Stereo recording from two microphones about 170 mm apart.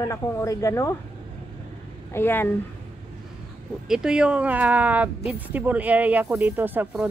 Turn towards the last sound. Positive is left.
turn(degrees=-10)  # may be behind; listen again after turning